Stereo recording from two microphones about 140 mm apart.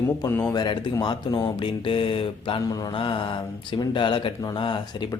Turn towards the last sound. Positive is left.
turn(degrees=30)  # may be behind; listen again after turning